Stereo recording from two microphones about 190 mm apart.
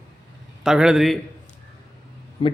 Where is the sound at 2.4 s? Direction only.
30° left (ahead or behind).